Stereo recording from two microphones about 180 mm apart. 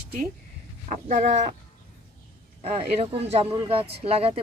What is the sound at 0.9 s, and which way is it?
Speech, 50° right (ahead or behind).